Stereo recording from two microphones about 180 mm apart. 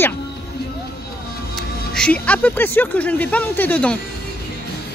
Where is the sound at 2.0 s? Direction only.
5° left (ahead or behind).